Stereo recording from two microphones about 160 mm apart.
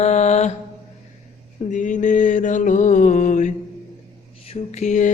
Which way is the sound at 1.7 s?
50° left (ahead or behind).